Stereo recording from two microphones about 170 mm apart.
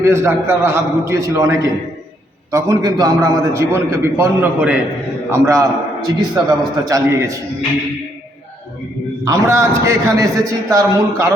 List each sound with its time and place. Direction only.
0.0 s a man's voice: 15° right (ahead or behind)
9.2 s a man's voice: 20° right (ahead or behind)